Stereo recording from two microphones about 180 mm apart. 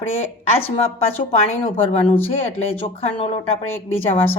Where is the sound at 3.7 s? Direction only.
10° left (ahead or behind).